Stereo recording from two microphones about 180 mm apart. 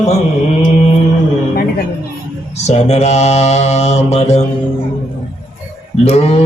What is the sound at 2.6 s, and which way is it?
Mantra, 35° left (ahead or behind).